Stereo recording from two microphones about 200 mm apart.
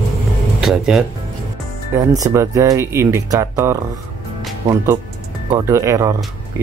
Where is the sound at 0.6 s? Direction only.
Centre (ahead or behind).